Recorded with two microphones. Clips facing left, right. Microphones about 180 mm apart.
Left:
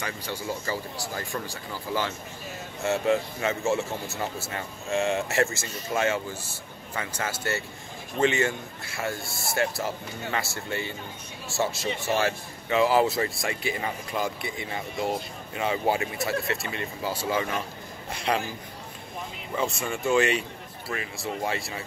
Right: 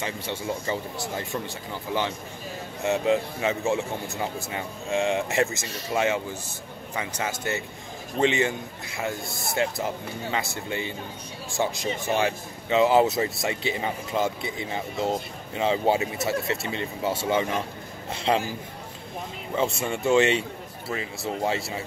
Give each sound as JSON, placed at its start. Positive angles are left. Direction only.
{"t": 0.0, "sound": "a man's voice", "side_deg": -25}
{"t": 19.5, "sound": "speech", "side_deg": -25}